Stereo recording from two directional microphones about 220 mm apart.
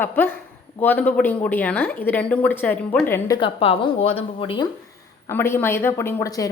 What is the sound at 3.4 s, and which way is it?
Speech, 25° left (ahead or behind).